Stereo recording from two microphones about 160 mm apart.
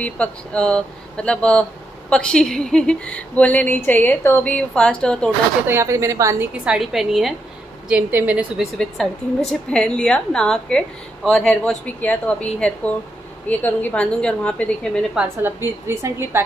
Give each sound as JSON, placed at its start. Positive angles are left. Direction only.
{"t": 0.0, "sound": "speech", "side_deg": 5}
{"t": 5.7, "sound": "a woman's voice", "side_deg": -15}
{"t": 6.6, "sound": "a woman's voice", "side_deg": -5}
{"t": 8.7, "sound": "a woman's voice", "side_deg": 0}
{"t": 15.1, "sound": "a woman's voice", "side_deg": -15}